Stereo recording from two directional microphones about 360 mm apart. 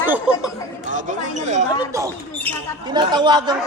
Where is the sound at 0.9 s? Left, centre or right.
Centre.